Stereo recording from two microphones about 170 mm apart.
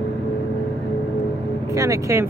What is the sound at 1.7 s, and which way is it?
Speech, 20° right (ahead or behind).